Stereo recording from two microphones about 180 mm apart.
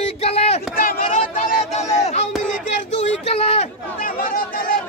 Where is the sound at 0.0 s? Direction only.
35° left (ahead or behind).